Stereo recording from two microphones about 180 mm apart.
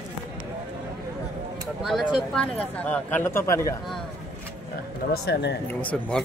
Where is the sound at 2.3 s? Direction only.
5° left (ahead or behind).